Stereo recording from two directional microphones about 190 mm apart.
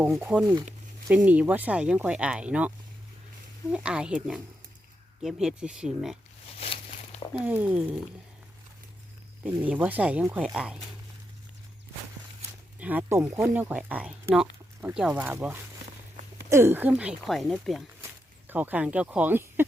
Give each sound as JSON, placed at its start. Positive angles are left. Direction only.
{"t": 0.0, "sound": "speech", "side_deg": -5}
{"t": 6.6, "sound": "a sound", "side_deg": 30}
{"t": 7.4, "sound": "speech", "side_deg": -10}
{"t": 9.4, "sound": "speech", "side_deg": -5}
{"t": 12.8, "sound": "speech", "side_deg": -10}